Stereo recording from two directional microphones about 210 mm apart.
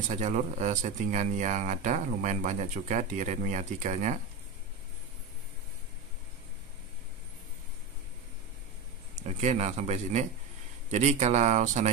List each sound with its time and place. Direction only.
0.1 s speech: 35° right (ahead or behind)
9.2 s speech: 30° right (ahead or behind)